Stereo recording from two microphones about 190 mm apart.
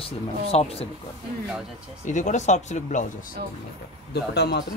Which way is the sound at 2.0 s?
40° left (ahead or behind).